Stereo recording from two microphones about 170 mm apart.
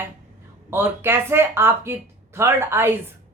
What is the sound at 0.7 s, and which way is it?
Speech, 15° right (ahead or behind).